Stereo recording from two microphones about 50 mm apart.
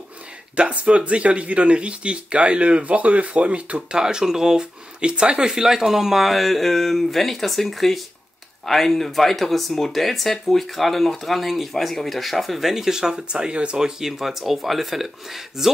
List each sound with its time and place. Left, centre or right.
0.6 s speech: right
3.9 s speech: centre